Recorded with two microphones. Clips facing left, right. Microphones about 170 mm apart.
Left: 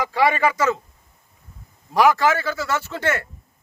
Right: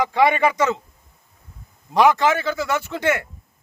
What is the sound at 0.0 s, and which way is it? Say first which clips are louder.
Speech: right 2 dB; 20° right (ahead or behind).